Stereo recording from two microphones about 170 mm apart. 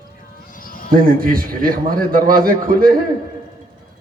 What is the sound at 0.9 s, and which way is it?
A man's voice, 55° right (ahead or behind).